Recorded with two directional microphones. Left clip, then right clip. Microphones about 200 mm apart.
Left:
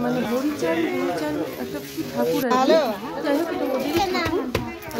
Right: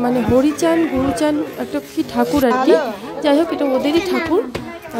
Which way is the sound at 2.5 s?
15° left (ahead or behind).